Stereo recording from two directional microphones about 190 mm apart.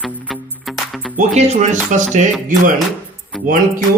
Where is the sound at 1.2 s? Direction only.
35° right (ahead or behind).